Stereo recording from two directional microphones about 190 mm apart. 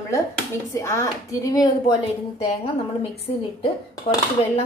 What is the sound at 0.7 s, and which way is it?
Speech, 15° left (ahead or behind).